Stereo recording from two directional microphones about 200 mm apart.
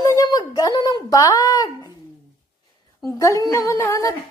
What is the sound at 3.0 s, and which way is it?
Speech, 15° left (ahead or behind).